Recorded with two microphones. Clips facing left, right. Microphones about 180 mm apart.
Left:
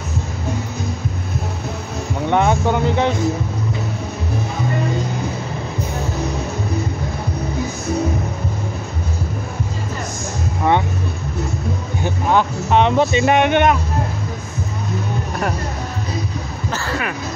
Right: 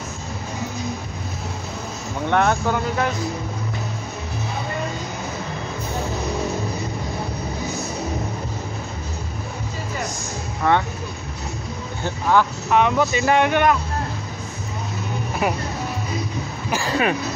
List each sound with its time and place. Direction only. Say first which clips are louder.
2.2 s speech: left 3 dB; 15° left (ahead or behind)
10.6 s speech: left 2 dB; 15° left (ahead or behind)
12.0 s speech: left 1 dB; 20° left (ahead or behind)
16.7 s a sound: right 4 dB; 15° right (ahead or behind)